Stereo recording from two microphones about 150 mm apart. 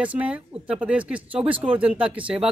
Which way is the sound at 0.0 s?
10° right (ahead or behind).